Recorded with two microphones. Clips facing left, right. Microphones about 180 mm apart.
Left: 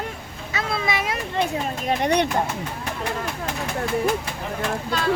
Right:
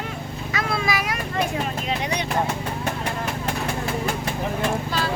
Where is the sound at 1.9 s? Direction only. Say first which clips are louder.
Left 9 dB; 60° left (ahead or behind).